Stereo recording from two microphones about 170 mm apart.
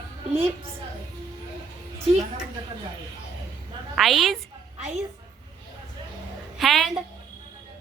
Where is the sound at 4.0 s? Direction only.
Centre (ahead or behind).